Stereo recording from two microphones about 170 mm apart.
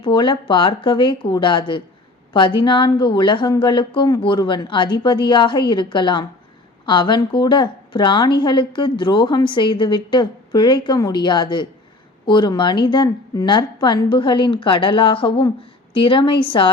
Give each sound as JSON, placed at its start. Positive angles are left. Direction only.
{"t": 0.0, "sound": "a woman's voice", "side_deg": 30}